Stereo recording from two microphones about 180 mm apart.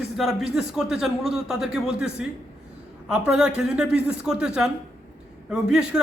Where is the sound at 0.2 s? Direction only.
Centre (ahead or behind).